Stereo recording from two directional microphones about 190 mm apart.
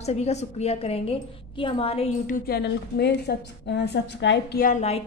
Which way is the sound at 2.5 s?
60° left (ahead or behind).